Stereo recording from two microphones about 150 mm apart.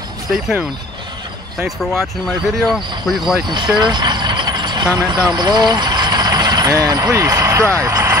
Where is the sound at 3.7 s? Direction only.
30° right (ahead or behind).